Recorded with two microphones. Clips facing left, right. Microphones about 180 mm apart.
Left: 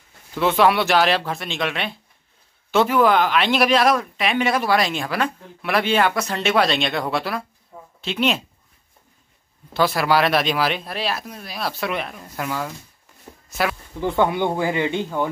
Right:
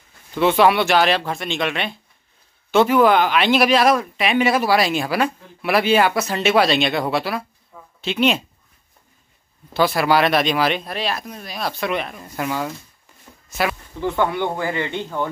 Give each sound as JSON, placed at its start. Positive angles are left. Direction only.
{"t": 0.3, "sound": "speech", "side_deg": 0}
{"t": 9.8, "sound": "speech", "side_deg": 0}
{"t": 13.5, "sound": "a sound", "side_deg": 0}
{"t": 13.9, "sound": "speech", "side_deg": 15}